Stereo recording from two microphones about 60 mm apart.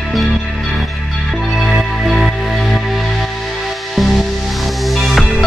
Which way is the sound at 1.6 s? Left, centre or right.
Centre.